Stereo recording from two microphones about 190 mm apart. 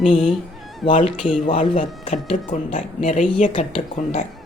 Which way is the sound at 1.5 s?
40° left (ahead or behind).